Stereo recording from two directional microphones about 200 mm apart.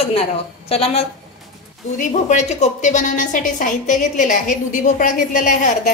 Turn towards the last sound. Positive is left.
turn(degrees=40)  # may be behind; listen again after turning